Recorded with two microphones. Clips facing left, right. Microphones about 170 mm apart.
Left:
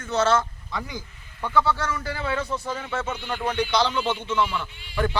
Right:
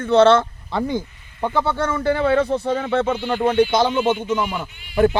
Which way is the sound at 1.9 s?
30° right (ahead or behind).